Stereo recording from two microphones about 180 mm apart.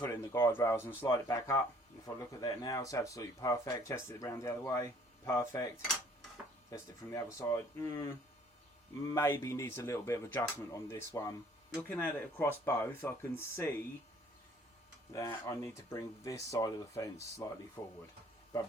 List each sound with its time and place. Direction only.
0.0 s speech: 15° left (ahead or behind)
6.7 s speech: 20° left (ahead or behind)
15.1 s speech: 15° left (ahead or behind)